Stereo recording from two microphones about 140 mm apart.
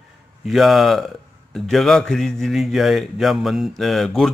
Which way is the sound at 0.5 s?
Centre (ahead or behind).